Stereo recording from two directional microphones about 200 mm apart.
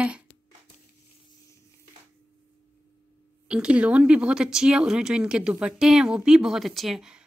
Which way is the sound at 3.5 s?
5° right (ahead or behind).